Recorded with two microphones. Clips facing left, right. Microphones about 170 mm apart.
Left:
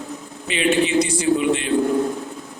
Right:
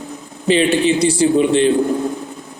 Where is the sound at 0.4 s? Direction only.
30° right (ahead or behind).